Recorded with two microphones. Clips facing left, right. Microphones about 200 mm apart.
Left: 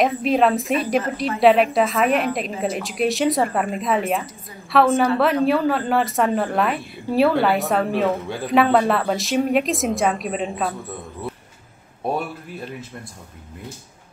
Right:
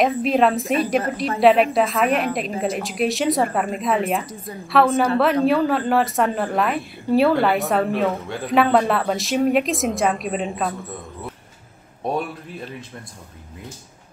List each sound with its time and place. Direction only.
0.0 s a man's voice: centre (ahead or behind)